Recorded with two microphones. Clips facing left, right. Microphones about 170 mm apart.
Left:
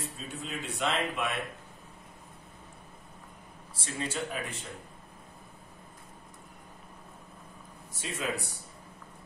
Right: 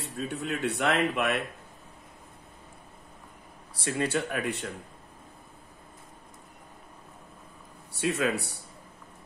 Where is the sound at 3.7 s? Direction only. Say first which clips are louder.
Right 7 dB; 65° right (ahead or behind).